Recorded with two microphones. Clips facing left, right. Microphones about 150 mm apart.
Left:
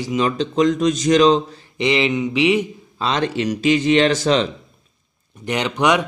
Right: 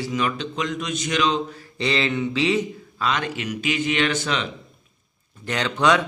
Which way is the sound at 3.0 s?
30° left (ahead or behind).